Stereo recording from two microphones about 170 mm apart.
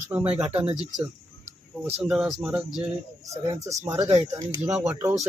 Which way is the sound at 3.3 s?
20° right (ahead or behind).